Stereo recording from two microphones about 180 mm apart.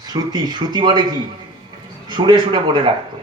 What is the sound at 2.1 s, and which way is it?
Speech, 25° right (ahead or behind).